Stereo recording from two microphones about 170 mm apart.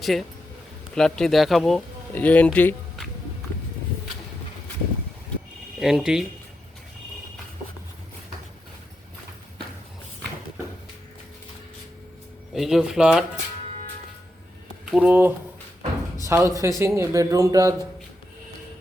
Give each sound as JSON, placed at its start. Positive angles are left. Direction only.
{"t": 0.0, "sound": "speech", "side_deg": 0}
{"t": 5.8, "sound": "speech", "side_deg": -5}
{"t": 12.5, "sound": "speech", "side_deg": 0}
{"t": 14.8, "sound": "speech", "side_deg": -5}